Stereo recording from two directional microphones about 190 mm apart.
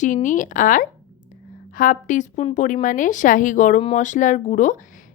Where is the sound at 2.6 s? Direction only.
45° left (ahead or behind).